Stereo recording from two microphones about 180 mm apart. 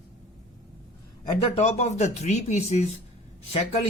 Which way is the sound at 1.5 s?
40° left (ahead or behind).